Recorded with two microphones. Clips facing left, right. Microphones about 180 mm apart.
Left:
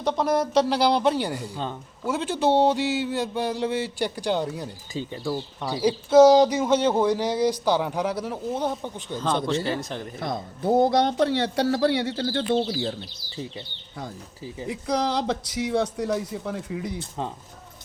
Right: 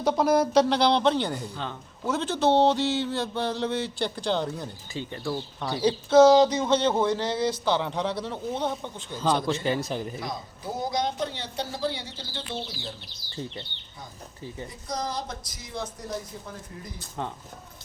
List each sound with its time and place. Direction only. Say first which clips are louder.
0.0 s speech: right 1 dB; 5° right (ahead or behind)
10.2 s a man's voice: left 5 dB; 55° left (ahead or behind)
14.7 s speech: left 9 dB; 70° left (ahead or behind)
17.0 s speech: left 3 dB; 25° left (ahead or behind)